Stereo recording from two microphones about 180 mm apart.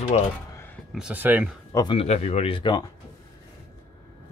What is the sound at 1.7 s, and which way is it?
Speech, 20° left (ahead or behind).